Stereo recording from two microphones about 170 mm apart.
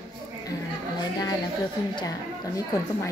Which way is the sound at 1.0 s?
25° left (ahead or behind).